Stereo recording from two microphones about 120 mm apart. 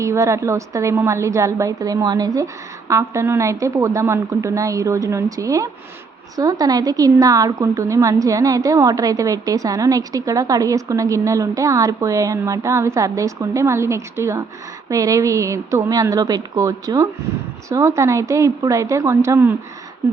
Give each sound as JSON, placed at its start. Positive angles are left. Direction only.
{"t": 0.0, "sound": "a woman's voice", "side_deg": -25}